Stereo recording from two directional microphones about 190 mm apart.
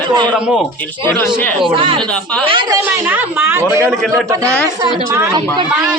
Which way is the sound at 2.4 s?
25° right (ahead or behind).